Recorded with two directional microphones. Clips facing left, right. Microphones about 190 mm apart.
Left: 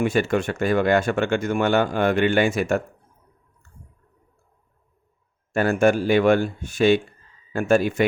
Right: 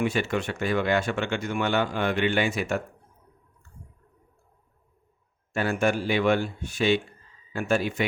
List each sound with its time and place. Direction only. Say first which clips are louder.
0.0 s speech: left 5 dB; 45° left (ahead or behind)
5.5 s speech: left 6 dB; 45° left (ahead or behind)